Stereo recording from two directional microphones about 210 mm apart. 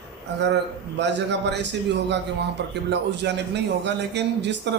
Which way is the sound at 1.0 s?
55° right (ahead or behind).